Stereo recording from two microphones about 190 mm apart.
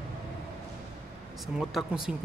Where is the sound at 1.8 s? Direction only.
Centre (ahead or behind).